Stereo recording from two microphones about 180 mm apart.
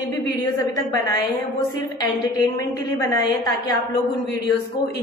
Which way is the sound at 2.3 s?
20° left (ahead or behind).